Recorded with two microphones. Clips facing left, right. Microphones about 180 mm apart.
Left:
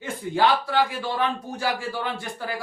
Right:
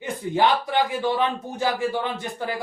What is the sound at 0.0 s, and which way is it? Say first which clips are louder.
Speech: right 1 dB; 20° right (ahead or behind).